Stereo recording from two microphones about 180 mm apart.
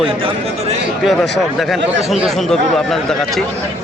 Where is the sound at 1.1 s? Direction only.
Centre (ahead or behind).